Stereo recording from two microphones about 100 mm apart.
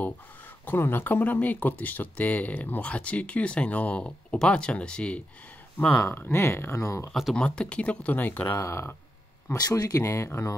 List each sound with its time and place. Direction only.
0.7 s speech: 20° left (ahead or behind)
7.1 s speech: centre (ahead or behind)
7.3 s speech: 10° left (ahead or behind)
8.5 s speech: 30° left (ahead or behind)